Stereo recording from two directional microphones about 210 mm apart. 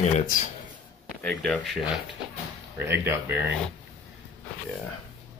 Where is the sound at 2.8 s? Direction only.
10° right (ahead or behind).